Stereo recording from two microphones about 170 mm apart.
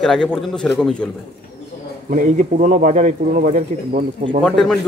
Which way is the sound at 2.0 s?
50° right (ahead or behind).